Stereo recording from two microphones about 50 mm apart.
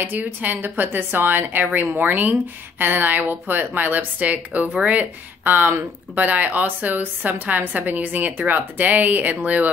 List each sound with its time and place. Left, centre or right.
0.0 s a woman's voice: right